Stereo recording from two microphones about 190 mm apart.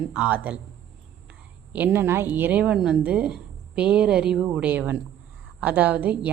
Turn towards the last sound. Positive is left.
turn(degrees=-10)  # may be behind; listen again after turning